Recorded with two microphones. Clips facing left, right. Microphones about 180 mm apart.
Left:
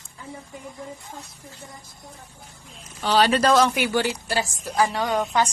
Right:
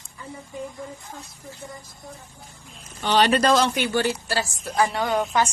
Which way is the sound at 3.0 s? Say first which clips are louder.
Even; centre (ahead or behind).